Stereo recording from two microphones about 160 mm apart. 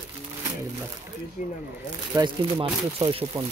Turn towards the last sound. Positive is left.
turn(degrees=-35)  # may be behind; listen again after turning